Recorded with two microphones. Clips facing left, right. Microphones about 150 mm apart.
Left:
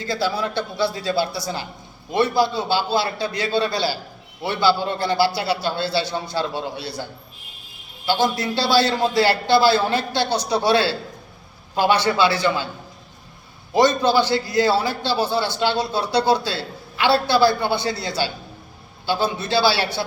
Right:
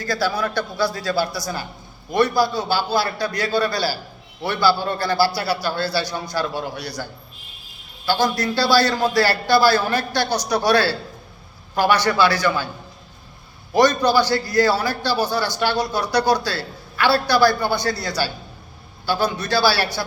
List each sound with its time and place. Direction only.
0.0 s a man's voice: 20° left (ahead or behind)
13.7 s a man's voice: 25° left (ahead or behind)